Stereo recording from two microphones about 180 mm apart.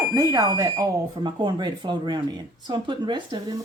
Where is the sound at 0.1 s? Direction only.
20° right (ahead or behind).